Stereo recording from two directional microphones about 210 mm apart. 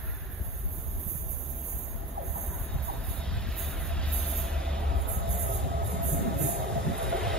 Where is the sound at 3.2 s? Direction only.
5° left (ahead or behind).